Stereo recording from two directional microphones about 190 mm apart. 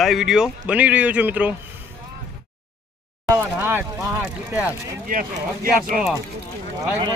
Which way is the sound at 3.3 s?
10° right (ahead or behind).